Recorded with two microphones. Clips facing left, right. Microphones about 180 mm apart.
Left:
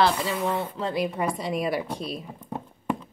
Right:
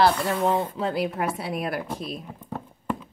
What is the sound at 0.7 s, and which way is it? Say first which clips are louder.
Speech: right 1 dB; 5° right (ahead or behind).